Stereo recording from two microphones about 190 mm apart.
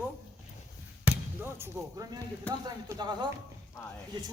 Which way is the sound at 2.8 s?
20° right (ahead or behind).